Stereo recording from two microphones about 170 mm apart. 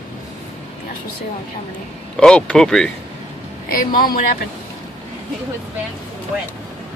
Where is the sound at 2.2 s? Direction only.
5° left (ahead or behind).